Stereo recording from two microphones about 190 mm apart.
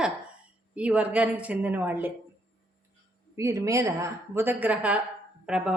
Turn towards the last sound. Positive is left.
turn(degrees=-5)  # may be behind; listen again after turning